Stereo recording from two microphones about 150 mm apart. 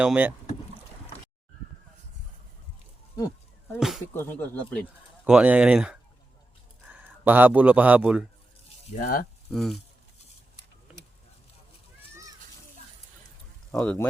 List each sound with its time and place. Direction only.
0.0 s speech: 10° right (ahead or behind)
3.8 s speech: centre (ahead or behind)
4.1 s speech: 15° left (ahead or behind)
5.2 s speech: 5° right (ahead or behind)
9.0 s speech: 80° left
9.5 s speech: centre (ahead or behind)
13.7 s speech: 10° left (ahead or behind)